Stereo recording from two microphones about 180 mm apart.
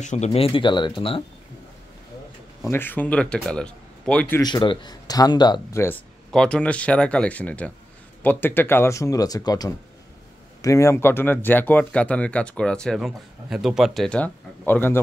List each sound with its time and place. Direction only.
0.0 s speech: 40° left (ahead or behind)
2.7 s speech: 10° left (ahead or behind)
4.4 s speech: 25° left (ahead or behind)